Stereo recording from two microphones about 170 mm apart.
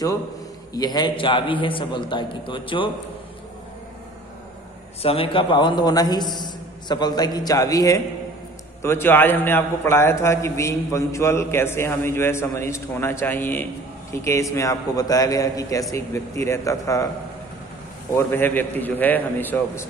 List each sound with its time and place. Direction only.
0.7 s a man's voice: 25° left (ahead or behind)
5.0 s a man's voice: 35° left (ahead or behind)
18.1 s a man's voice: 10° left (ahead or behind)